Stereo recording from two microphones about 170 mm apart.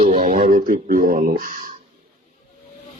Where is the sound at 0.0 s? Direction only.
40° right (ahead or behind).